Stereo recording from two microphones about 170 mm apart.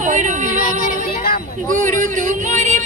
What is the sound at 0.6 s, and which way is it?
Child singing, 55° left (ahead or behind).